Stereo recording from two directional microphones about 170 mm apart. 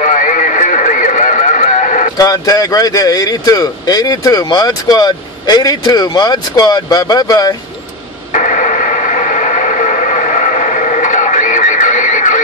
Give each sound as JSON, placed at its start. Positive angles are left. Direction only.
{"t": 0.1, "sound": "radio", "side_deg": 50}
{"t": 2.1, "sound": "speech", "side_deg": 20}
{"t": 8.3, "sound": "radio", "side_deg": 50}